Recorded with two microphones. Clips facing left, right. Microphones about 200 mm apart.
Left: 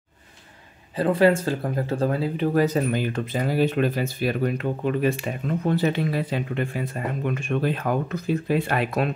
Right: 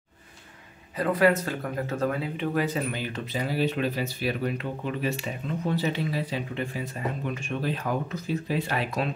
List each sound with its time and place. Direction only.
0.9 s speech: 30° left (ahead or behind); by 9.1 s 55° left (ahead or behind)